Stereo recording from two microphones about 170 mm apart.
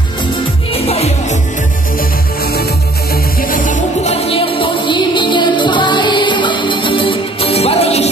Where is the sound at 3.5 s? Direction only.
45° left (ahead or behind).